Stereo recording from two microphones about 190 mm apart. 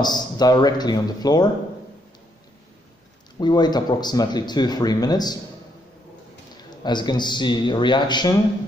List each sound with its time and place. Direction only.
0.0 s speech: 20° left (ahead or behind)
3.3 s speech: 20° left (ahead or behind)
6.5 s speech: 25° left (ahead or behind)